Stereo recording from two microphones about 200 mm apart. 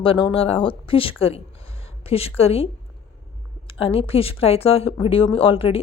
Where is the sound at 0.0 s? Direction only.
25° left (ahead or behind).